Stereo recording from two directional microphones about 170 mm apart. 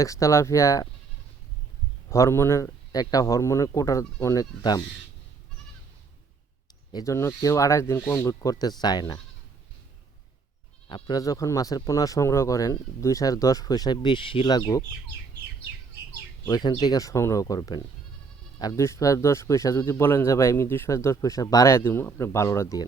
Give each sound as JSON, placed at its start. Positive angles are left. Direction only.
{"t": 0.0, "sound": "speech", "side_deg": 20}
{"t": 2.0, "sound": "speech", "side_deg": 15}
{"t": 6.9, "sound": "speech", "side_deg": 20}
{"t": 8.4, "sound": "speech", "side_deg": 25}
{"t": 10.8, "sound": "speech", "side_deg": 30}
{"t": 16.5, "sound": "speech", "side_deg": 25}